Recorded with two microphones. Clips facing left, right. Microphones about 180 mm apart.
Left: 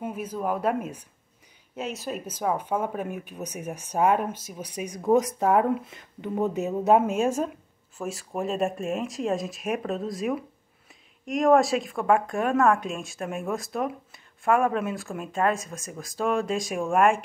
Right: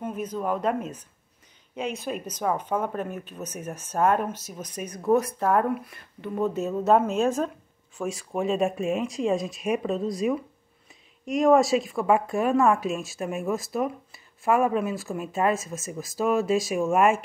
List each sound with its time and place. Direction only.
0.0 s speech: 10° left (ahead or behind)